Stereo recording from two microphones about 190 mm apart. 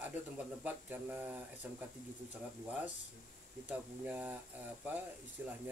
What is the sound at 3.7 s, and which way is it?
Speech, 10° right (ahead or behind).